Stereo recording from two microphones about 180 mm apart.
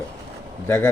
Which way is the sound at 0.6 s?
10° left (ahead or behind).